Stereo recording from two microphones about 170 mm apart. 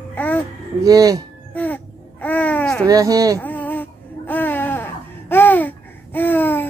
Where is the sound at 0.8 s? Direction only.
20° right (ahead or behind).